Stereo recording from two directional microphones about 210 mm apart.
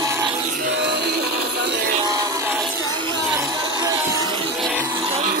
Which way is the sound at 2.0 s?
15° right (ahead or behind).